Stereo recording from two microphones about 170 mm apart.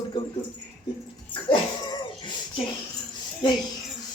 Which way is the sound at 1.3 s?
30° left (ahead or behind).